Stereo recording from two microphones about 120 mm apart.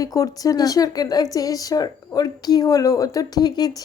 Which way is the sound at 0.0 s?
30° left (ahead or behind).